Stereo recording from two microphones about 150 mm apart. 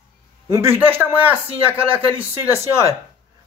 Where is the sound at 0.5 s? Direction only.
15° right (ahead or behind).